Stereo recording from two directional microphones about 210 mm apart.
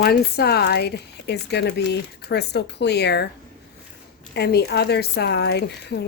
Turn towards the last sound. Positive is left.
turn(degrees=55)  # may be behind; listen again after turning